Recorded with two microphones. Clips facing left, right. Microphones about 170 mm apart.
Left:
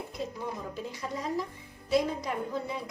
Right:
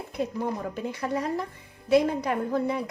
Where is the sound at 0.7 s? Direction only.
60° right (ahead or behind).